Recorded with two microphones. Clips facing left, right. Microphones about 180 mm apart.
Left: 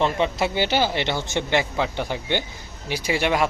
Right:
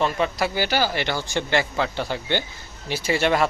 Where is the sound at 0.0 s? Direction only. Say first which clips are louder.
Left 1 dB; 20° left (ahead or behind).